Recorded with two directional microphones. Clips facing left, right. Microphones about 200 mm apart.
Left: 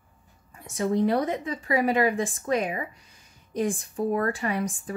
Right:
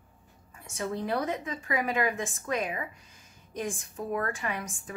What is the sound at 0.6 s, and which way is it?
A woman's voice, 35° left (ahead or behind).